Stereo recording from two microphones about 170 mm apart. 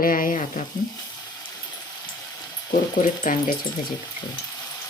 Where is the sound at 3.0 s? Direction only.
55° left (ahead or behind).